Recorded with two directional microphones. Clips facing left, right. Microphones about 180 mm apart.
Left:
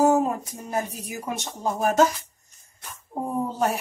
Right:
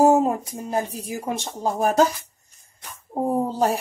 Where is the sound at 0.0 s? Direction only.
30° right (ahead or behind).